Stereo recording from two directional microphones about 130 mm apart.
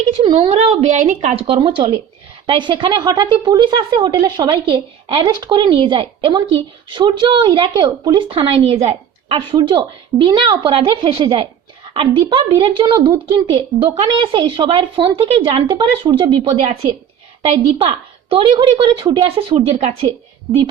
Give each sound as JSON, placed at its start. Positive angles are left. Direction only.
{"t": 0.2, "sound": "a woman's voice", "side_deg": -40}
{"t": 8.3, "sound": "a woman's voice", "side_deg": -45}
{"t": 17.4, "sound": "a woman's voice", "side_deg": -50}